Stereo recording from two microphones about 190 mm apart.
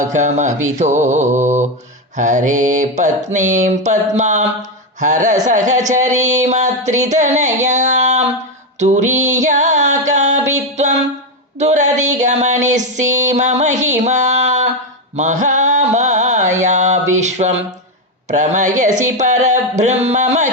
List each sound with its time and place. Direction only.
0.1 s music: 40° right (ahead or behind)
11.5 s a sound: 40° right (ahead or behind)
18.3 s music: 40° right (ahead or behind)
18.8 s speech: 40° right (ahead or behind)